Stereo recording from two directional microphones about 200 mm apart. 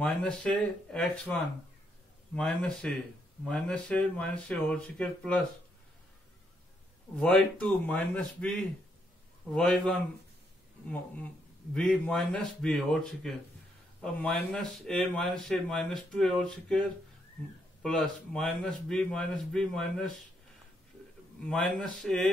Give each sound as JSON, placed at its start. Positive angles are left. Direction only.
{"t": 0.0, "sound": "a man's voice", "side_deg": 5}
{"t": 2.3, "sound": "a man's voice", "side_deg": 5}
{"t": 7.2, "sound": "a man's voice", "side_deg": 5}
{"t": 11.7, "sound": "a man's voice", "side_deg": 5}
{"t": 17.8, "sound": "a man's voice", "side_deg": 5}
{"t": 21.5, "sound": "a man's voice", "side_deg": 5}